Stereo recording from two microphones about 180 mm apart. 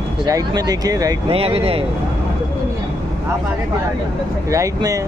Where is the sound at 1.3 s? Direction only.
30° right (ahead or behind).